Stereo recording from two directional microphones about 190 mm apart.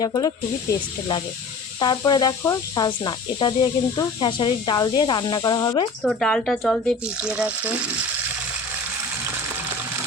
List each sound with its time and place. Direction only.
0.0 s speech: 20° left (ahead or behind)
6.0 s speech: centre (ahead or behind)